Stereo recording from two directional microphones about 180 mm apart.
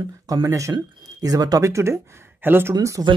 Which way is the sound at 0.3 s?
15° right (ahead or behind).